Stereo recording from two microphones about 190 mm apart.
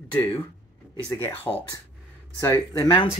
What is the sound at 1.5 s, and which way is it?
Speech, 10° left (ahead or behind).